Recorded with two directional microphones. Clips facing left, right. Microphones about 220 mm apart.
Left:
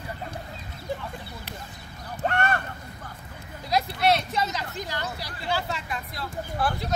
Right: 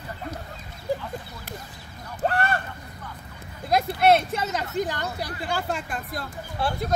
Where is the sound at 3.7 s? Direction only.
50° right (ahead or behind).